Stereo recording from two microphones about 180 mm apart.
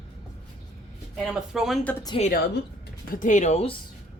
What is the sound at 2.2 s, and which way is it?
Speech, 30° left (ahead or behind).